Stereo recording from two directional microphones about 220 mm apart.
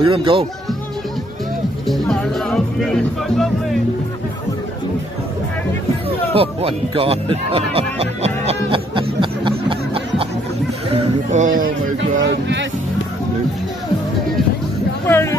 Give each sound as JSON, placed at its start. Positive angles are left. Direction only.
{"t": 0.0, "sound": "speech", "side_deg": -20}
{"t": 1.9, "sound": "speech", "side_deg": 0}
{"t": 6.0, "sound": "music", "side_deg": -25}
{"t": 10.9, "sound": "a man's voice", "side_deg": -35}
{"t": 12.2, "sound": "speech", "side_deg": -55}
{"t": 15.0, "sound": "speech", "side_deg": 10}